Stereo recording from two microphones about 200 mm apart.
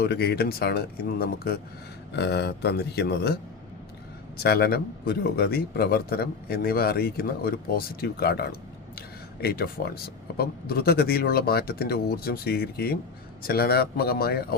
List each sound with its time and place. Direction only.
0.0 s a man's voice: 55° left (ahead or behind)
4.4 s a man's voice: 50° left (ahead or behind)